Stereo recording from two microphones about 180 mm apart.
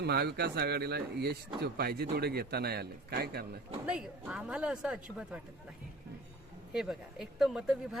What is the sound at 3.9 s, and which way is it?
Speech, 5° right (ahead or behind).